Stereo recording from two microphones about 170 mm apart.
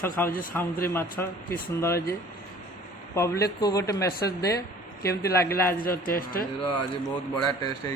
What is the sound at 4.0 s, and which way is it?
Speech, 70° left (ahead or behind).